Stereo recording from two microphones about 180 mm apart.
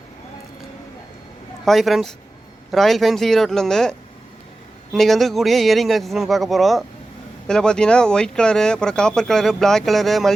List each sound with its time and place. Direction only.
1.6 s speech: centre (ahead or behind)